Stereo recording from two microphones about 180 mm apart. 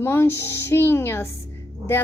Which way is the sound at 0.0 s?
15° left (ahead or behind).